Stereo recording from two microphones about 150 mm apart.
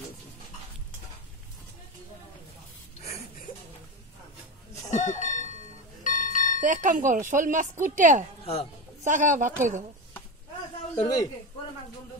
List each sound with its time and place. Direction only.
4.9 s a sound: 55° left (ahead or behind)
6.0 s music: 60° left (ahead or behind)
6.6 s speech: 60° right (ahead or behind)
11.0 s speech: 30° left (ahead or behind)